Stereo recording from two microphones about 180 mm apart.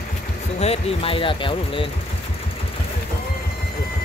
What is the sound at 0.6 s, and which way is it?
Speech, 35° left (ahead or behind).